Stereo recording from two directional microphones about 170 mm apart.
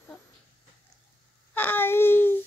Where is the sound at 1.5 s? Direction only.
10° left (ahead or behind).